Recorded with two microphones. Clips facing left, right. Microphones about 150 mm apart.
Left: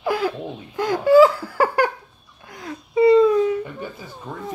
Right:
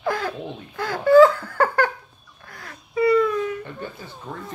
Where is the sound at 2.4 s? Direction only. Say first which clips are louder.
Left 8 dB; 20° left (ahead or behind).